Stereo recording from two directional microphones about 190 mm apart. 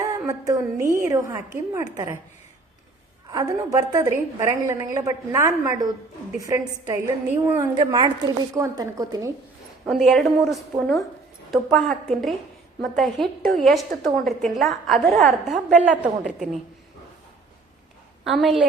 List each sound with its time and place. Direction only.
0.0 s a sound: 15° right (ahead or behind)
1.0 s a woman's voice: 15° right (ahead or behind)
3.2 s a woman's voice: 20° right (ahead or behind)
9.8 s a woman's voice: centre (ahead or behind)
18.3 s a woman's voice: centre (ahead or behind)